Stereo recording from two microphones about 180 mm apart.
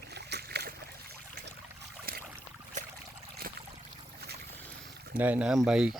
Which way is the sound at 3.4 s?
60° right (ahead or behind).